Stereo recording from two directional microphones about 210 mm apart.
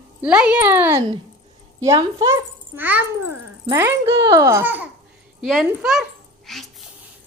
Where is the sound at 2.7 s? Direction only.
10° right (ahead or behind).